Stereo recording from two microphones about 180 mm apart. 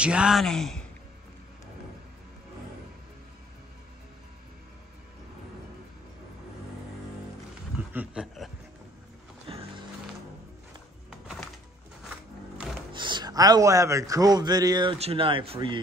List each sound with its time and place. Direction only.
0.0 s speech: 5° right (ahead or behind)
7.9 s speech: 5° right (ahead or behind)
9.5 s music: 30° right (ahead or behind)
11.1 s music: 5° right (ahead or behind)
12.9 s a man's voice: 25° right (ahead or behind)